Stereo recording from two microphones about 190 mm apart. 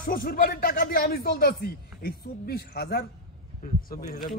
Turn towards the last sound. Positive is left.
turn(degrees=50)  # may be behind; listen again after turning